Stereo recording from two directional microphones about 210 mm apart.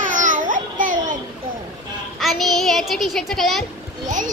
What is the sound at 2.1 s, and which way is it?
A child's voice, centre (ahead or behind).